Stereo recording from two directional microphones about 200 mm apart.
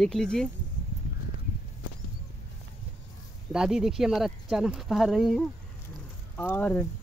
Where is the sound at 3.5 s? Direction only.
5° right (ahead or behind).